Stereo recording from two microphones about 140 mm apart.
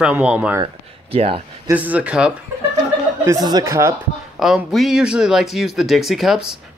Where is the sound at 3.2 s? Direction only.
25° right (ahead or behind).